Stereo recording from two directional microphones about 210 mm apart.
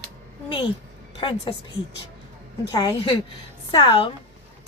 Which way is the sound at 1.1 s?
25° left (ahead or behind).